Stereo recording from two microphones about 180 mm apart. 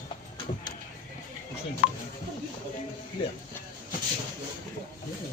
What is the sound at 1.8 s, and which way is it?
Speech, 50° left (ahead or behind).